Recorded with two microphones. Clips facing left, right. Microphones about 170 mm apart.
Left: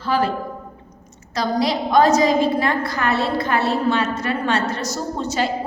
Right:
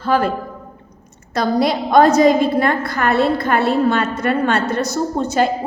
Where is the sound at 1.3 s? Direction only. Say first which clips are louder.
Right 4 dB; 55° right (ahead or behind).